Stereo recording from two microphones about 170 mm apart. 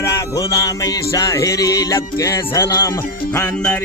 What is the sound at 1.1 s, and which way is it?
Speech, 20° left (ahead or behind).